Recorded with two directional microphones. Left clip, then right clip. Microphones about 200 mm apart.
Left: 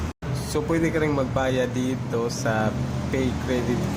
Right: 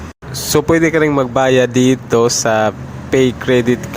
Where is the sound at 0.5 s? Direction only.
45° right (ahead or behind).